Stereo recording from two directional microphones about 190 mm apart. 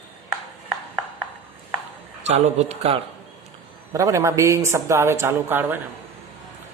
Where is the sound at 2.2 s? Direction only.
35° right (ahead or behind).